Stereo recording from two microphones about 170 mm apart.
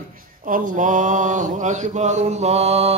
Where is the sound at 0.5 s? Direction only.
50° right (ahead or behind).